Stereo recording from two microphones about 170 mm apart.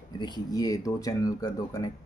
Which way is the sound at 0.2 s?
25° left (ahead or behind).